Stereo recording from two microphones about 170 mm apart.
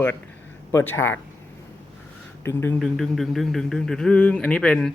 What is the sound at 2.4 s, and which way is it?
Speech, 15° left (ahead or behind).